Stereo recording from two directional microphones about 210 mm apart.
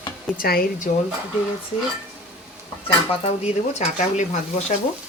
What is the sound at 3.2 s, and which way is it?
Speech, 30° left (ahead or behind).